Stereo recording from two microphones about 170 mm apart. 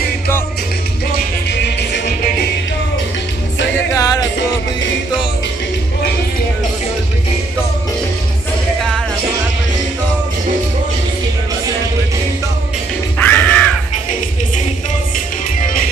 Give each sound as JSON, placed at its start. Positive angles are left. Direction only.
{"t": 1.5, "sound": "music", "side_deg": 85}
{"t": 3.7, "sound": "music", "side_deg": 20}
{"t": 13.2, "sound": "music", "side_deg": 10}